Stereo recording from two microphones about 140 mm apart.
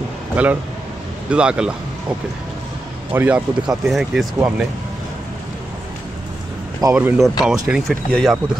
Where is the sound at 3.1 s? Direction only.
10° right (ahead or behind).